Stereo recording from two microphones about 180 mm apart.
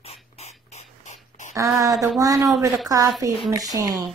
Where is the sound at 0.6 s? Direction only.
40° left (ahead or behind).